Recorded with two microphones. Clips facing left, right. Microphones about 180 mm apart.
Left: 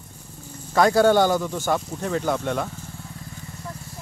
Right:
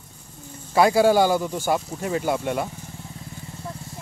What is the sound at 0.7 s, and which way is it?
Speech, 10° right (ahead or behind).